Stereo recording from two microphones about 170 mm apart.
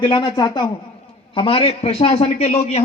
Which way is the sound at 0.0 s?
30° left (ahead or behind).